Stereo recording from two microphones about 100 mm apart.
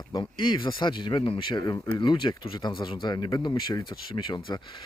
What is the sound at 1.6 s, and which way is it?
Speech, 45° left (ahead or behind).